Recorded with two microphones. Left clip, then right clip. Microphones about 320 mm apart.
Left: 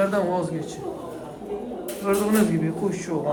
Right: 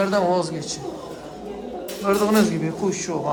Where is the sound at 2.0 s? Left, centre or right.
Centre.